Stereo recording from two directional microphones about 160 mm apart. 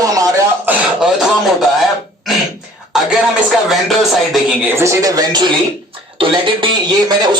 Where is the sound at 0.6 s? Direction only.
10° right (ahead or behind).